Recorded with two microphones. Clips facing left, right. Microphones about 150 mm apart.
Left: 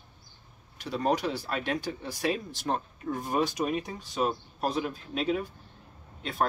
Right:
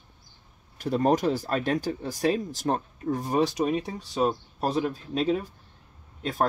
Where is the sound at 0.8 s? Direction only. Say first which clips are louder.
Right 5 dB; 45° right (ahead or behind).